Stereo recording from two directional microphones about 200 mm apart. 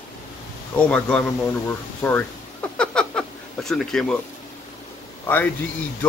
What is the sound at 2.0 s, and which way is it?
Speech, 15° left (ahead or behind).